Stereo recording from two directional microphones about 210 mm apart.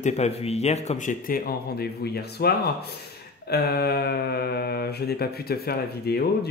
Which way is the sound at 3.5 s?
50° left (ahead or behind).